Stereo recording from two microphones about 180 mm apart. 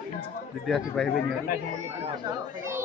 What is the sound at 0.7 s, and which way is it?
Speech, centre (ahead or behind).